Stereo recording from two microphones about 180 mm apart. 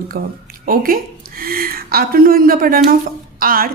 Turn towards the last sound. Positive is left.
turn(degrees=-55)  # may be behind; listen again after turning